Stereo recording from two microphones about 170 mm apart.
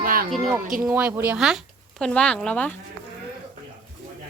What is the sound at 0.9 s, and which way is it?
Speech, 5° right (ahead or behind).